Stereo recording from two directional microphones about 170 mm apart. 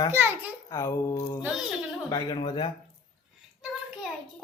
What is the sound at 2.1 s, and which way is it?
Speech, 25° left (ahead or behind).